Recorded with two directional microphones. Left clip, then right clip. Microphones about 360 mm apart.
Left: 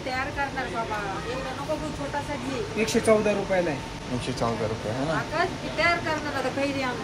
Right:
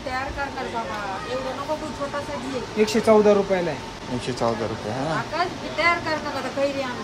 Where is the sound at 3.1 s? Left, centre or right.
Right.